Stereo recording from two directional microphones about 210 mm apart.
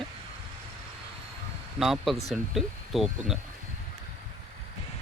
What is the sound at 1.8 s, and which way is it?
Speech, centre (ahead or behind).